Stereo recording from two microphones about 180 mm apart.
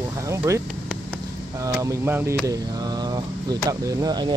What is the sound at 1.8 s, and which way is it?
Speech, 10° right (ahead or behind).